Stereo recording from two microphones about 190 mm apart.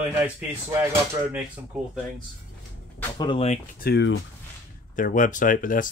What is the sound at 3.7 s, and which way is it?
Speech, 60° left (ahead or behind).